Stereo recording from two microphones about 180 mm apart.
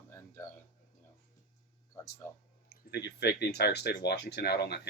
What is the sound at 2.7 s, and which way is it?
Speech, 65° left (ahead or behind).